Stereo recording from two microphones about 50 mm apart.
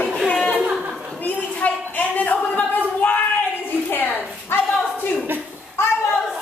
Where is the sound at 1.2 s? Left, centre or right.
Left.